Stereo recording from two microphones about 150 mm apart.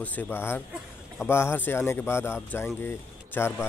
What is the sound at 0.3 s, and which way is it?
A man's voice, 15° left (ahead or behind).